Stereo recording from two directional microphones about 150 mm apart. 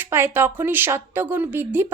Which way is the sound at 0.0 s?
15° right (ahead or behind).